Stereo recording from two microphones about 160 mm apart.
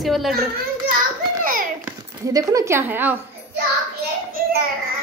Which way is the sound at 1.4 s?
60° right (ahead or behind).